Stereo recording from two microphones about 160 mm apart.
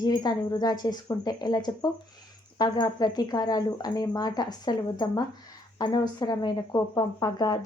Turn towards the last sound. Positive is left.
turn(degrees=25)  # may be behind; listen again after turning